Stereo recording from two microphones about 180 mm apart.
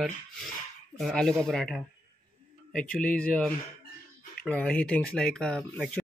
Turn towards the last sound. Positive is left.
turn(degrees=5)  # may be behind; listen again after turning